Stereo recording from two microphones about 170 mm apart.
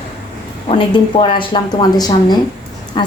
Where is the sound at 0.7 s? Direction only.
30° left (ahead or behind).